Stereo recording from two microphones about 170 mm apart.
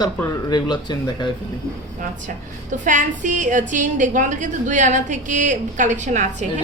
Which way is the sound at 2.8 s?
50° right (ahead or behind).